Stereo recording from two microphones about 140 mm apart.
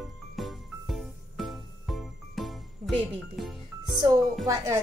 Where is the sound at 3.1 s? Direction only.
Centre (ahead or behind).